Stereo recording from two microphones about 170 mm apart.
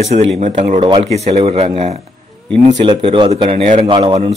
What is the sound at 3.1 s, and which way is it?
Speech, 30° right (ahead or behind).